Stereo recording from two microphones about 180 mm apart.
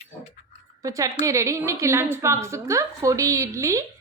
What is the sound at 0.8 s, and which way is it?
A woman's voice, 20° right (ahead or behind).